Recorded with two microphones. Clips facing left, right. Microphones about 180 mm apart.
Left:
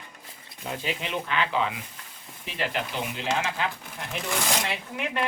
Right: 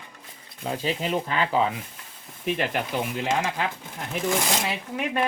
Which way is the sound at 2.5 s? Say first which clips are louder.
Right 5 dB; 55° right (ahead or behind).